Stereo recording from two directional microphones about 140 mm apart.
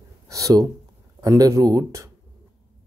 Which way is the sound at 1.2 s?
25° right (ahead or behind).